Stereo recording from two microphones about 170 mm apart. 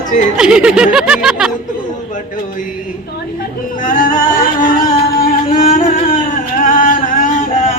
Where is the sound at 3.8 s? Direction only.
55° left (ahead or behind).